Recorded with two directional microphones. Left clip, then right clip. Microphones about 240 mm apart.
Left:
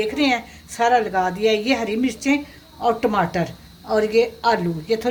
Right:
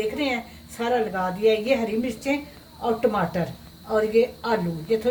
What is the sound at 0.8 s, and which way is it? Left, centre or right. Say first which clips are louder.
Speech: left 6 dB; left.